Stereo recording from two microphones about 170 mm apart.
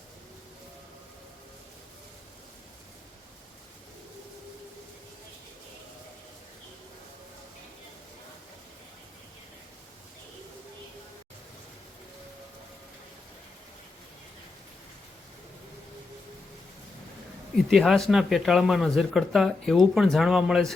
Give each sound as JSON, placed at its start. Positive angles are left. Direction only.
{"t": 17.7, "sound": "speech", "side_deg": 0}